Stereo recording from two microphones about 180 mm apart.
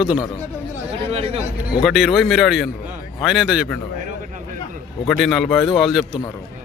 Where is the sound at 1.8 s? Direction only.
Centre (ahead or behind).